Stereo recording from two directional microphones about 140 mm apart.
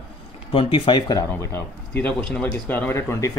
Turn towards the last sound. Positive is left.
turn(degrees=20)  # may be behind; listen again after turning